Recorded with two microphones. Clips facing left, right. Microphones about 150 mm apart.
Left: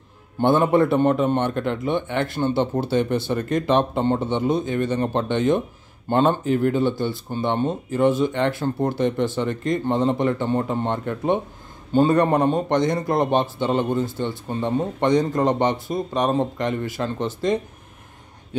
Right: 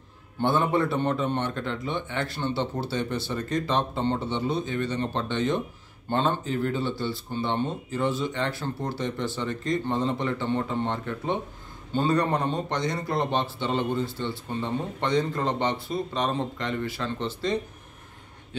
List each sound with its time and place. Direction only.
0.4 s speech: 50° left (ahead or behind)